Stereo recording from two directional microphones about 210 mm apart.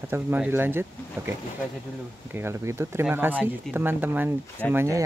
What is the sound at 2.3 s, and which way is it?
Speech, 10° right (ahead or behind).